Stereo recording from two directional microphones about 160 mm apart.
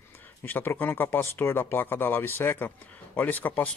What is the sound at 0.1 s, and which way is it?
Speech, 10° left (ahead or behind).